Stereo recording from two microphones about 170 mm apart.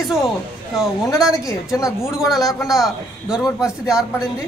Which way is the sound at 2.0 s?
Centre (ahead or behind).